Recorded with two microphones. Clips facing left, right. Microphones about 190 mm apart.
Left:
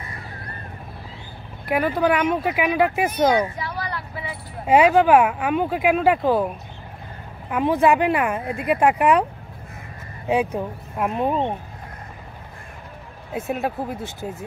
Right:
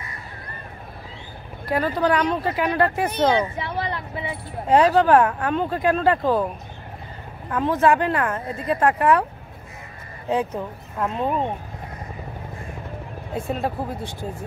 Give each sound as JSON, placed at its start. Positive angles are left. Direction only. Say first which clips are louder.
{"t": 1.8, "sound": "speech", "louder": "left 1 dB", "side_deg": 10}
{"t": 3.5, "sound": "vehicle", "louder": "right 2 dB", "side_deg": -25}
{"t": 4.6, "sound": "speech", "louder": "left 1 dB", "side_deg": 10}
{"t": 10.2, "sound": "speech", "louder": "left 2 dB", "side_deg": 10}
{"t": 13.5, "sound": "speech", "louder": "left 1 dB", "side_deg": 5}